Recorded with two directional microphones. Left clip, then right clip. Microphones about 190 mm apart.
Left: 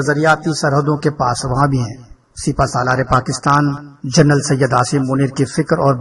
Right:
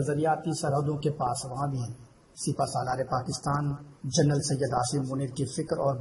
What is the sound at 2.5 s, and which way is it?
A man's voice, 40° left (ahead or behind).